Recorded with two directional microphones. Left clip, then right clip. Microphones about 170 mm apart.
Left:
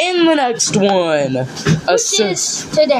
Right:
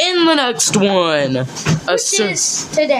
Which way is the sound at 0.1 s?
25° right (ahead or behind).